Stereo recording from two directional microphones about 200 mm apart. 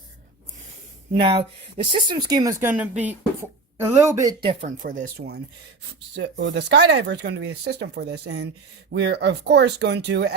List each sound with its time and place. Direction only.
1.1 s speech: 25° right (ahead or behind)
5.0 s speech: 50° right (ahead or behind)
6.1 s speech: 60° right (ahead or behind)